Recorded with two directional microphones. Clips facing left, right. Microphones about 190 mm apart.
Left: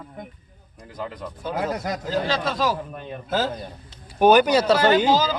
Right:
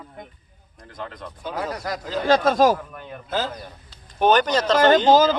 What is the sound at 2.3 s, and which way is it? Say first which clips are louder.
Speech: right 12 dB; 50° right (ahead or behind).